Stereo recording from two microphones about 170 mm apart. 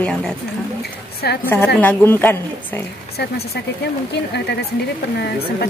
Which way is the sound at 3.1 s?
70° left (ahead or behind).